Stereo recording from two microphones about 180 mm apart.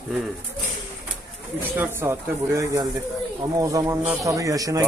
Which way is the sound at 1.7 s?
10° right (ahead or behind).